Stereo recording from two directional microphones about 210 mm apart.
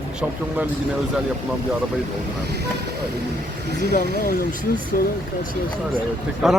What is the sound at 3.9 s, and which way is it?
Speech, 45° left (ahead or behind).